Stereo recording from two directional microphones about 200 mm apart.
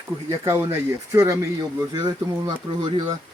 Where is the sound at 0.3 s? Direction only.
15° right (ahead or behind).